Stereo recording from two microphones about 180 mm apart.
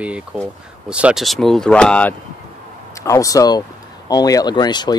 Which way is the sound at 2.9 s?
15° left (ahead or behind).